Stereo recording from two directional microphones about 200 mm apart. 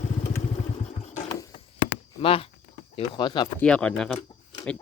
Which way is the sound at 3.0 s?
20° left (ahead or behind).